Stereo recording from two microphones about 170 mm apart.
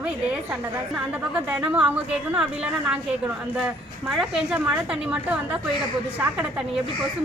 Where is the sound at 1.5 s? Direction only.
10° right (ahead or behind).